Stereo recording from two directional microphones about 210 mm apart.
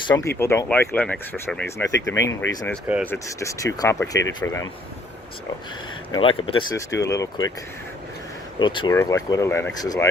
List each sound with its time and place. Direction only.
0.1 s speech: 10° left (ahead or behind)
1.9 s speech: 55° left (ahead or behind)
2.5 s speech: 15° left (ahead or behind)
2.8 s speech: 10° right (ahead or behind)
3.1 s speech: 15° left (ahead or behind)
6.1 s speech: 25° left (ahead or behind)
8.5 s speech: 25° left (ahead or behind)